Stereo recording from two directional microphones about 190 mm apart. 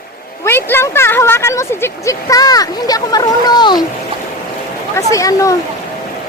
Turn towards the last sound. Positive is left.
turn(degrees=15)  # may be behind; listen again after turning